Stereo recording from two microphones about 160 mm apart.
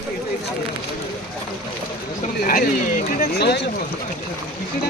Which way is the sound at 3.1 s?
75° left (ahead or behind).